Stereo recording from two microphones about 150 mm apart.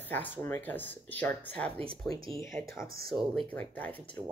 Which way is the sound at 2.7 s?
20° left (ahead or behind).